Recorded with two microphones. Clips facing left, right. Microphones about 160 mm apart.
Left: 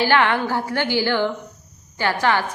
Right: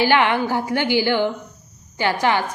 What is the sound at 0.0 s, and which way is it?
A woman's voice, 15° right (ahead or behind).